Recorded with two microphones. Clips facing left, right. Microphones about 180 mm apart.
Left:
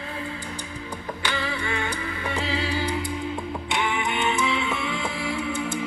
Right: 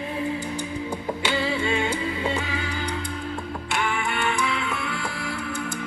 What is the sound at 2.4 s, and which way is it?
Music, 30° left (ahead or behind).